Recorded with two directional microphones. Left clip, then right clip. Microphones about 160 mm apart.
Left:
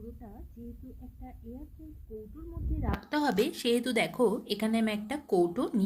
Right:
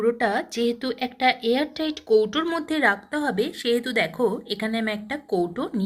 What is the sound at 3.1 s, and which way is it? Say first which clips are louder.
A woman's voice: right 4 dB; 5° left (ahead or behind).